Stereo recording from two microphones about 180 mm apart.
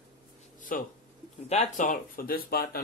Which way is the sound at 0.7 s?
50° left (ahead or behind).